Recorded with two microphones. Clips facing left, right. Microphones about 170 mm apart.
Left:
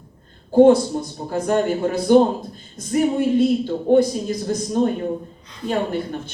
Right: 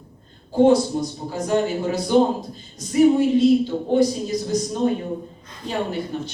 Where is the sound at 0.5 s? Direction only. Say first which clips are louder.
Left 3 dB; 55° left (ahead or behind).